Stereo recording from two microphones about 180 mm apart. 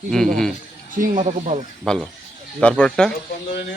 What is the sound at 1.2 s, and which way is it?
Speech, 35° right (ahead or behind).